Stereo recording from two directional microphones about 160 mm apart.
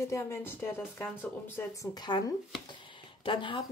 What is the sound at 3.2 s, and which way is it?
Speech, 30° left (ahead or behind).